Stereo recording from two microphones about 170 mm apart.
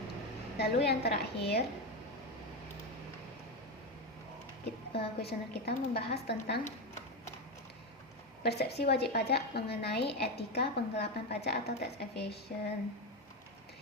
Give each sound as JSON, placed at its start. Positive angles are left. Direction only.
{"t": 0.6, "sound": "speech", "side_deg": 75}
{"t": 4.9, "sound": "speech", "side_deg": 70}
{"t": 8.4, "sound": "speech", "side_deg": 70}